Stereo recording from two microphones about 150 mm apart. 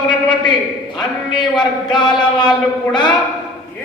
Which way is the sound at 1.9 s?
30° left (ahead or behind).